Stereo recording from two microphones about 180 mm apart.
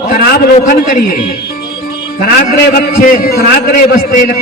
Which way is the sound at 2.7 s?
55° left (ahead or behind).